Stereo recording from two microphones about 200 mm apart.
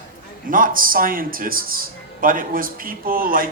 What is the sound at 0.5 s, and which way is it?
A man's voice, 45° right (ahead or behind).